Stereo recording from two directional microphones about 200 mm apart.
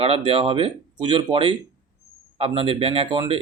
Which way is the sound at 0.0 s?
30° right (ahead or behind).